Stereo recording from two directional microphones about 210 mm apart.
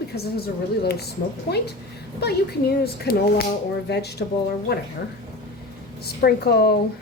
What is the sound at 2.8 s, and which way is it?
A woman's voice, 50° left (ahead or behind).